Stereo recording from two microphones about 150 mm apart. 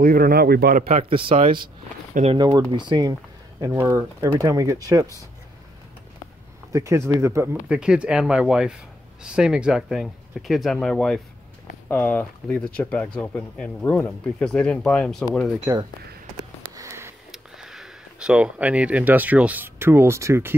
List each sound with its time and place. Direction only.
0.0 s speech: 80° right
0.8 s speech: 40° right (ahead or behind)
3.6 s speech: 20° right (ahead or behind)
6.7 s speech: 20° right (ahead or behind)
7.6 s speech: 5° right (ahead or behind)
15.7 s speech: 20° right (ahead or behind)
16.3 s a sound: 20° right (ahead or behind)
17.3 s speech: centre (ahead or behind); by 20.5 s 20° right (ahead or behind)